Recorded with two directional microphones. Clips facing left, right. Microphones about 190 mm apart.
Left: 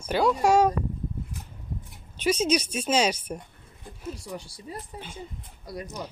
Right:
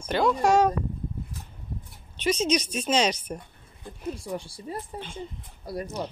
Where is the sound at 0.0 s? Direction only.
5° left (ahead or behind).